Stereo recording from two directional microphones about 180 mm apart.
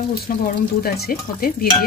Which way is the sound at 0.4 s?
55° left (ahead or behind).